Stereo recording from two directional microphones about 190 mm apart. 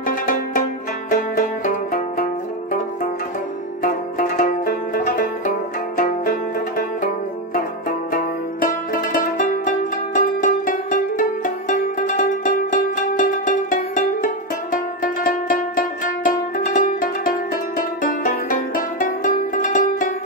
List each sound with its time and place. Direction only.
0.0 s music: 45° left (ahead or behind)
3.8 s music: 45° left (ahead or behind)
8.1 s music: 45° left (ahead or behind)